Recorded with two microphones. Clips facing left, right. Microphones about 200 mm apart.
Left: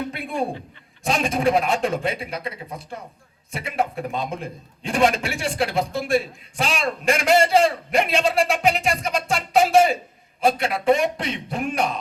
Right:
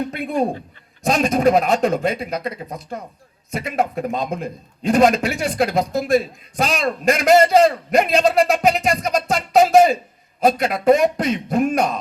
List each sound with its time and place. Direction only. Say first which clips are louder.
0.1 s a man's voice: right 5 dB; 40° right (ahead or behind)